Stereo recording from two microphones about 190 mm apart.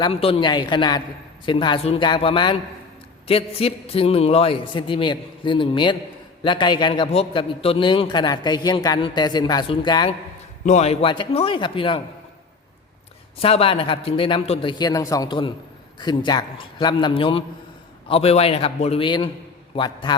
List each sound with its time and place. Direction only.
0.0 s a man's voice: 30° left (ahead or behind)
10.7 s a man's voice: 35° left (ahead or behind)
13.4 s a man's voice: 30° left (ahead or behind)